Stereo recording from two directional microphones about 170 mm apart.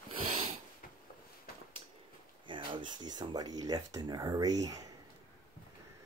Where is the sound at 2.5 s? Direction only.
30° right (ahead or behind).